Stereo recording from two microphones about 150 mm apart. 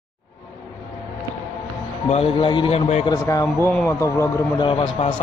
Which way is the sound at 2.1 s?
40° left (ahead or behind).